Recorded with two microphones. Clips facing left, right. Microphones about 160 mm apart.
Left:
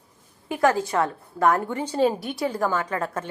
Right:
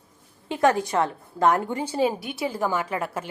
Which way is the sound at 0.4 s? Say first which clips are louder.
Even; 25° right (ahead or behind).